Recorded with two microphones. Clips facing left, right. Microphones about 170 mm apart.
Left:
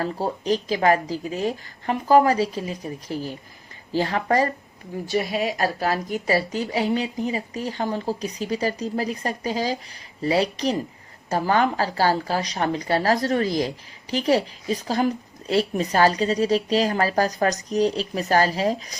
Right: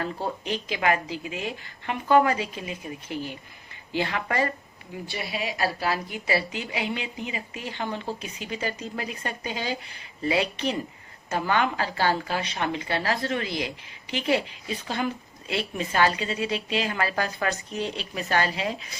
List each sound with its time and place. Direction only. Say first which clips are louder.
0.0 s speech: left 4 dB; 35° left (ahead or behind)